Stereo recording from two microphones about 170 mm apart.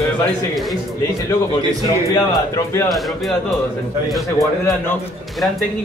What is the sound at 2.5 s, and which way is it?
Speech, 15° left (ahead or behind).